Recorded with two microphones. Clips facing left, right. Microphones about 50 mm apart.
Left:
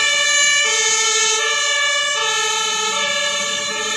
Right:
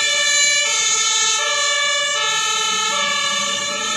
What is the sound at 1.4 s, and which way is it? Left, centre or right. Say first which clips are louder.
Emergency vehicle: left 1 dB; left.